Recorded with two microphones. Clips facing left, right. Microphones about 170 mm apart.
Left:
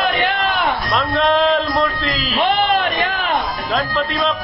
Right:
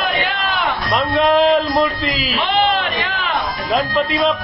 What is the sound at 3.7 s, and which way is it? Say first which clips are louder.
Speech: right 3 dB; 10° right (ahead or behind).